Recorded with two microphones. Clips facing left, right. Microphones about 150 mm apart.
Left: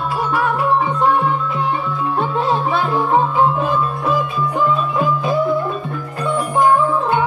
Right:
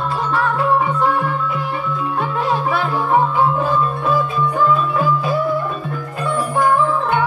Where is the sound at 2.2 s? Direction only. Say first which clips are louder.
Left 1 dB; 25° left (ahead or behind).